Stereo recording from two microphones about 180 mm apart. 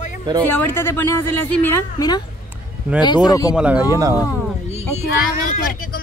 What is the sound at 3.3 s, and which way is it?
Speech, 20° left (ahead or behind).